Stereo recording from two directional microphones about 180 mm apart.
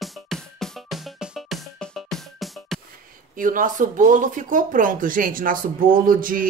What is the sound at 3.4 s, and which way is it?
Speech, 50° right (ahead or behind).